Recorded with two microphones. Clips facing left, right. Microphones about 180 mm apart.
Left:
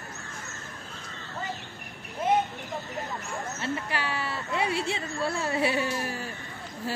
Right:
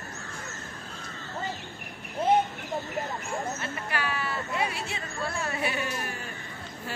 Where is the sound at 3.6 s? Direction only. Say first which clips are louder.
Left 2 dB; 30° left (ahead or behind).